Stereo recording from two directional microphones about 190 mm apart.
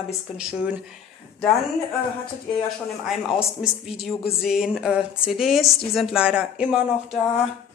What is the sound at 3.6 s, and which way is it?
Speech, centre (ahead or behind).